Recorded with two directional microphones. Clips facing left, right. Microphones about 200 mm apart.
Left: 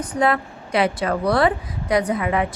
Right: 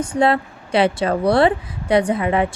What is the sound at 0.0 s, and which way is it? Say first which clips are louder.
Speech: right 3 dB; 30° right (ahead or behind).